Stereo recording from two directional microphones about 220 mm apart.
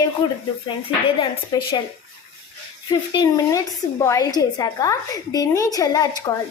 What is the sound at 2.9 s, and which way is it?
A woman's voice, 15° left (ahead or behind).